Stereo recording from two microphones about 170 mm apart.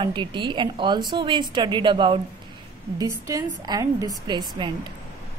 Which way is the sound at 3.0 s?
20° right (ahead or behind).